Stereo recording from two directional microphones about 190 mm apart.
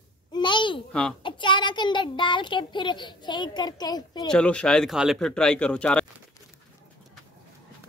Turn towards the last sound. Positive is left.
turn(degrees=5)  # may be behind; listen again after turning